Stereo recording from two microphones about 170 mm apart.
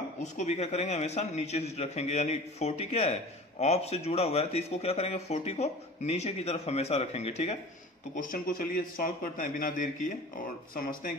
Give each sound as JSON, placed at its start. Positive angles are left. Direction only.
{"t": 0.2, "sound": "a man's voice", "side_deg": 40}
{"t": 8.1, "sound": "a man's voice", "side_deg": 55}